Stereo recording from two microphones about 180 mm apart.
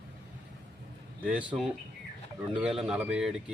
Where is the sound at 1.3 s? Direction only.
5° right (ahead or behind).